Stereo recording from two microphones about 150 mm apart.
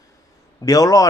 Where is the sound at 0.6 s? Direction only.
25° left (ahead or behind).